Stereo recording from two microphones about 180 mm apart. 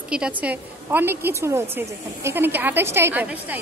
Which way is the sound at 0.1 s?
5° right (ahead or behind).